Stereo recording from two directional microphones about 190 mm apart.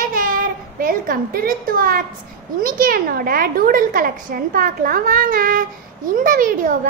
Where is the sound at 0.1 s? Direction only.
45° right (ahead or behind).